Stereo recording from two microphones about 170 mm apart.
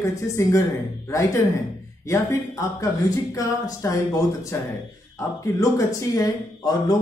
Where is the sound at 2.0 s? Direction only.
20° left (ahead or behind).